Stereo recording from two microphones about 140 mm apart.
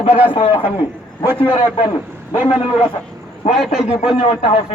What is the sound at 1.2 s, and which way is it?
Speech, 15° right (ahead or behind).